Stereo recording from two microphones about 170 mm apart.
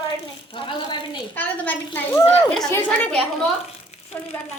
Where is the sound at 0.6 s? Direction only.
30° left (ahead or behind).